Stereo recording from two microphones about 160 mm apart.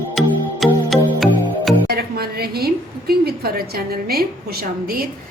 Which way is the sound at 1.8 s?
80° right.